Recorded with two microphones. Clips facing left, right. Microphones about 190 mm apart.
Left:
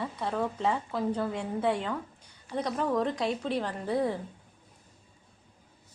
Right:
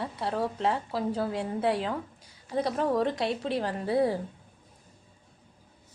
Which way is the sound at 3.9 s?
35° right (ahead or behind).